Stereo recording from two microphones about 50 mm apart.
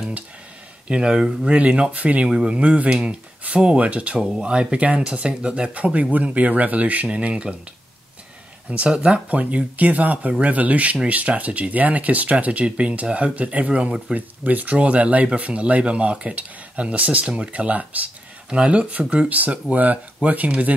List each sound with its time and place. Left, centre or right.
0.8 s speech: centre
4.2 s speech: centre
8.6 s speech: right
14.1 s speech: right